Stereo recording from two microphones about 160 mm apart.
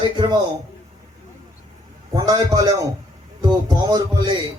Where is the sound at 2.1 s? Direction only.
25° right (ahead or behind).